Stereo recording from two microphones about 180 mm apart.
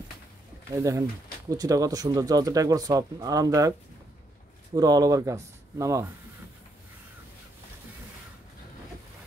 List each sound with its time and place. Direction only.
0.7 s speech: 15° right (ahead or behind)
4.7 s speech: 20° right (ahead or behind)